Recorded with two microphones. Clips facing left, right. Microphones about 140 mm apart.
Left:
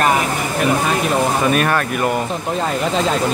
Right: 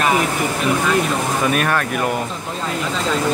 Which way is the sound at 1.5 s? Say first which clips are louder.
Left 2 dB; centre (ahead or behind).